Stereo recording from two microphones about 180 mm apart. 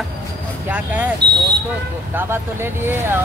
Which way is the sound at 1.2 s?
70° right (ahead or behind).